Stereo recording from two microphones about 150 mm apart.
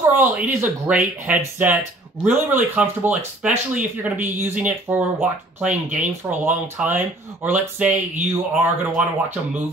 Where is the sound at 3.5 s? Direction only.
55° right (ahead or behind).